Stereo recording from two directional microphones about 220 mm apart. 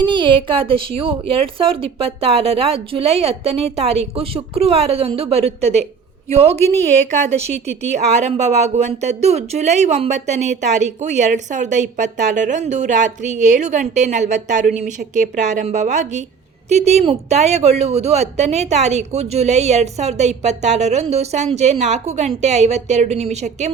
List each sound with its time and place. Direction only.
0.0 s speech: 20° right (ahead or behind)
6.6 s speech: 10° left (ahead or behind)
7.1 s speech: 30° right (ahead or behind)